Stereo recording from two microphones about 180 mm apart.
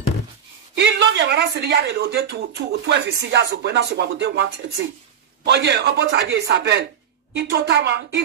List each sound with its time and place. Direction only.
0.7 s speech: 80° right